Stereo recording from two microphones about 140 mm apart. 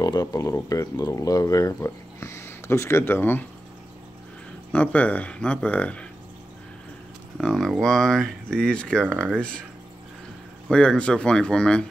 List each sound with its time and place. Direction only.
0.0 s speech: 25° left (ahead or behind)
4.7 s speech: 10° left (ahead or behind)
7.3 s speech: 5° left (ahead or behind)
10.7 s speech: 5° left (ahead or behind)